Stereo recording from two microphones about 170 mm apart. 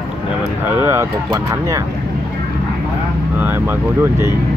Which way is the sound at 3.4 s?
10° right (ahead or behind).